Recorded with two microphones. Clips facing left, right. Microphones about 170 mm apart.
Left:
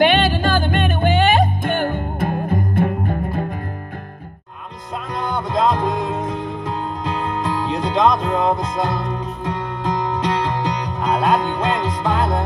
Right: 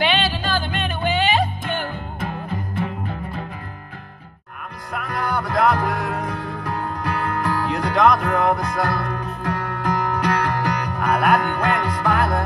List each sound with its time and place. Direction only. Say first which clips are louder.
0.0 s music: left 6 dB; 50° left (ahead or behind)
4.9 s music: left 1 dB; 20° left (ahead or behind)